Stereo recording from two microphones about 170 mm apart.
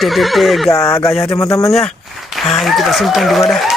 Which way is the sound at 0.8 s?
15° left (ahead or behind).